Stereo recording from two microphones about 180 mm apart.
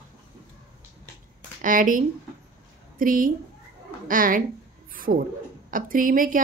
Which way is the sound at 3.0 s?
50° right (ahead or behind).